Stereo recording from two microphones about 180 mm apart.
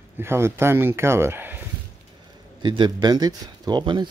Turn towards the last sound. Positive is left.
turn(degrees=-25)  # may be behind; listen again after turning